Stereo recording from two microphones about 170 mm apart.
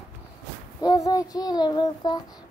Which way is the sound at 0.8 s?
20° left (ahead or behind).